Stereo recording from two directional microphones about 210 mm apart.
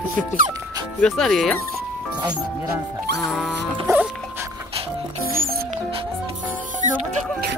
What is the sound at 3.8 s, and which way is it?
Music, 5° right (ahead or behind).